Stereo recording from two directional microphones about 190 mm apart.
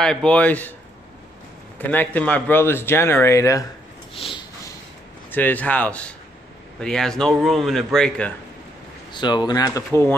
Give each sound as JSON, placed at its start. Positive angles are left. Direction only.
{"t": 0.0, "sound": "speech", "side_deg": 5}
{"t": 1.8, "sound": "speech", "side_deg": 10}
{"t": 4.1, "sound": "a sound", "side_deg": 30}
{"t": 5.3, "sound": "a man's voice", "side_deg": 10}
{"t": 9.1, "sound": "speech", "side_deg": 25}